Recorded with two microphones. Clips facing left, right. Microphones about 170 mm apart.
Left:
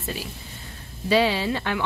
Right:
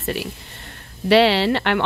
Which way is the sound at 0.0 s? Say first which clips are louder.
Right 6 dB; 70° right (ahead or behind).